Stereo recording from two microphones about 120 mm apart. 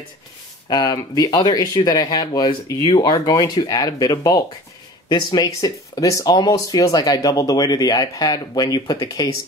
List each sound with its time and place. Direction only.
0.7 s speech: 35° left (ahead or behind)